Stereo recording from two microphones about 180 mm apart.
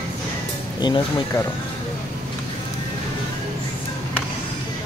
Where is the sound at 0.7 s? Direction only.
25° left (ahead or behind).